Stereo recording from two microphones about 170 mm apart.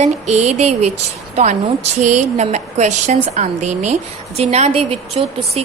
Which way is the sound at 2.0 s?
45° right (ahead or behind).